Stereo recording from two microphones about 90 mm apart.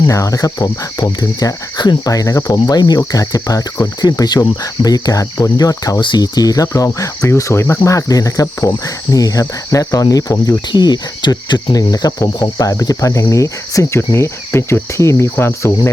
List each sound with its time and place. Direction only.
0.1 s speech: 40° left (ahead or behind)
6.0 s speech: 55° left (ahead or behind); by 15.9 s 30° left (ahead or behind)